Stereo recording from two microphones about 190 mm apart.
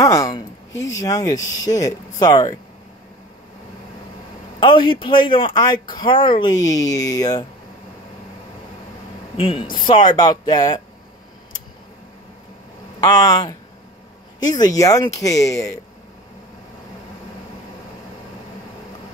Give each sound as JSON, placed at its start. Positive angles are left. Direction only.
{"t": 0.0, "sound": "a sound", "side_deg": 20}
{"t": 0.9, "sound": "speech", "side_deg": 20}
{"t": 4.6, "sound": "speech", "side_deg": 25}
{"t": 9.8, "sound": "speech", "side_deg": 25}
{"t": 13.0, "sound": "speech", "side_deg": 20}